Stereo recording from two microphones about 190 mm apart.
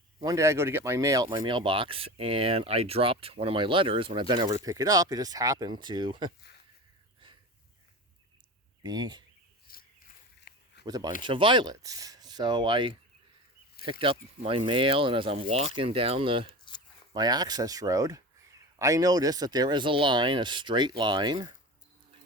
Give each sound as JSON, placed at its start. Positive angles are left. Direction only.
{"t": 0.2, "sound": "speech", "side_deg": -15}
{"t": 8.8, "sound": "speech", "side_deg": -20}
{"t": 9.7, "sound": "a sound", "side_deg": 50}
{"t": 10.8, "sound": "speech", "side_deg": -20}
{"t": 14.0, "sound": "speech", "side_deg": -30}